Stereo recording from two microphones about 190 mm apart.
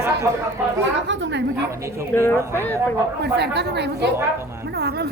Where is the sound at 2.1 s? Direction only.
10° left (ahead or behind).